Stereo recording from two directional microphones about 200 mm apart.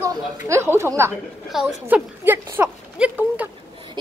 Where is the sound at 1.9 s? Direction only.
10° right (ahead or behind).